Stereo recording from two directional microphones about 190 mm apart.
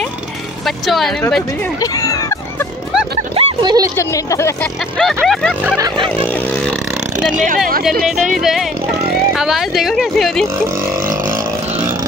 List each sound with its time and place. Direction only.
0.7 s speech: centre (ahead or behind)
1.8 s music: 20° left (ahead or behind)
3.3 s a sound: 20° right (ahead or behind)
3.9 s speech: 15° left (ahead or behind)
5.0 s speech: centre (ahead or behind)
5.8 s a sound: 25° right (ahead or behind)
7.2 s speech: 5° right (ahead or behind)